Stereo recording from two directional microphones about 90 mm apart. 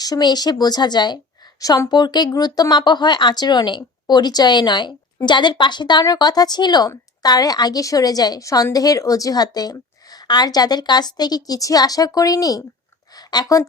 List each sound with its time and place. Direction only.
0.0 s a woman's voice: 50° left (ahead or behind)